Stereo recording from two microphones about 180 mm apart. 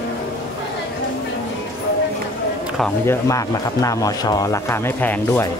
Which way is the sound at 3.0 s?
15° left (ahead or behind).